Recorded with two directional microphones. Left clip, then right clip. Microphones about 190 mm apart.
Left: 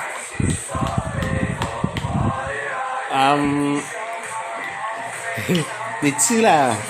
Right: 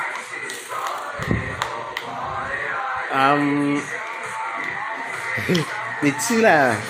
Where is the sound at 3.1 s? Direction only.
20° left (ahead or behind).